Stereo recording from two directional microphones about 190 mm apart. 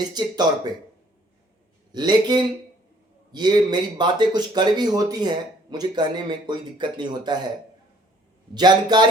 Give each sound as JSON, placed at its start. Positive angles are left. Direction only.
{"t": 0.0, "sound": "speech", "side_deg": -20}
{"t": 1.9, "sound": "speech", "side_deg": -20}
{"t": 8.5, "sound": "speech", "side_deg": -20}